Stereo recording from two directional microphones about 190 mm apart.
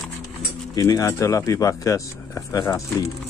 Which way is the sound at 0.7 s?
20° left (ahead or behind).